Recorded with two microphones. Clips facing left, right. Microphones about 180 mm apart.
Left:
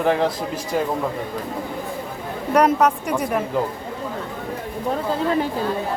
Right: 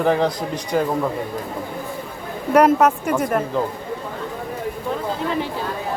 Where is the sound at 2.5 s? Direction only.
5° right (ahead or behind).